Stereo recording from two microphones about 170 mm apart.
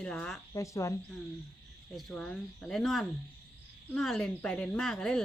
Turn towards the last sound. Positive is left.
turn(degrees=5)  # may be behind; listen again after turning